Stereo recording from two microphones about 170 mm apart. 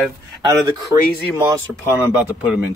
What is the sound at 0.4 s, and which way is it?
Speech, 20° right (ahead or behind).